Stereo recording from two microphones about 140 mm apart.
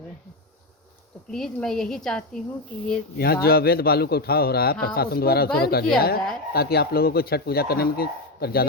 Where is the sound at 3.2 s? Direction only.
90° left.